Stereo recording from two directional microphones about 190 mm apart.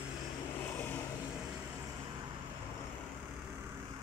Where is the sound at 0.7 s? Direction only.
10° left (ahead or behind).